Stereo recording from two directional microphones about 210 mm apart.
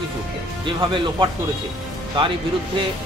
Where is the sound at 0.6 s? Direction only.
25° right (ahead or behind).